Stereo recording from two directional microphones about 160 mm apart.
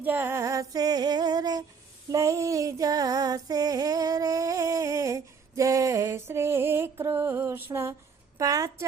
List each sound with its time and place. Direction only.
0.0 s female singing: 15° right (ahead or behind)